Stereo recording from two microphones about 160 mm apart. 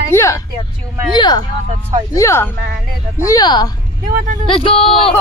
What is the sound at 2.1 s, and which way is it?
A woman's voice, 15° left (ahead or behind).